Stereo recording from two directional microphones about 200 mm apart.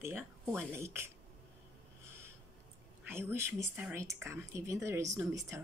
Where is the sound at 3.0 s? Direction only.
10° right (ahead or behind).